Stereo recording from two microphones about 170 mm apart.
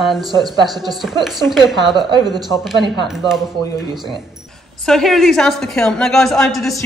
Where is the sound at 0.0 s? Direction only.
Centre (ahead or behind).